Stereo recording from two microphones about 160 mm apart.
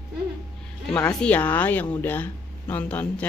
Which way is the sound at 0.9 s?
15° left (ahead or behind).